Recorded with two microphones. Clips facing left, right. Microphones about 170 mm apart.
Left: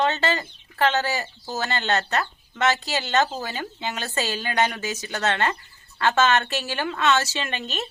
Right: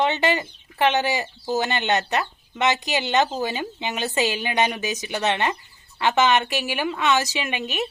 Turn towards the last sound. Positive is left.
turn(degrees=-10)  # may be behind; listen again after turning